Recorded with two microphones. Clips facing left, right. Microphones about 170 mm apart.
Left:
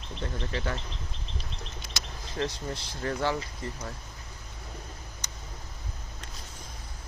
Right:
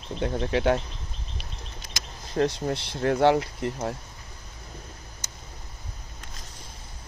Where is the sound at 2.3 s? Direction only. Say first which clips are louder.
Right 8 dB; 45° right (ahead or behind).